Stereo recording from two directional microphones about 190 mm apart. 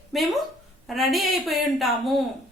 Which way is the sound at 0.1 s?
Centre (ahead or behind).